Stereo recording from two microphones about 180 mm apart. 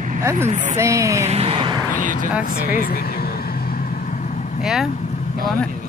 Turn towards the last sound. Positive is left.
turn(degrees=0)  # may be behind; listen again after turning